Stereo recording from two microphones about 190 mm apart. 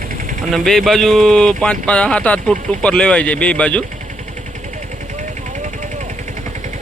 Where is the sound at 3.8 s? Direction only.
40° right (ahead or behind).